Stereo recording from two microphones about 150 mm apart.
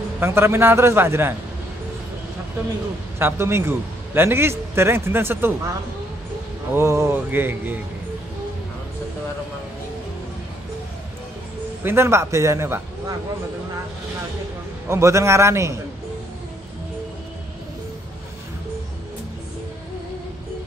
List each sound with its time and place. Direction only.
0.2 s a man's voice: 15° right (ahead or behind)
3.2 s a man's voice: 15° right (ahead or behind)
6.7 s a man's voice: 20° right (ahead or behind)
11.8 s a man's voice: 15° right (ahead or behind)
14.9 s a man's voice: 20° right (ahead or behind)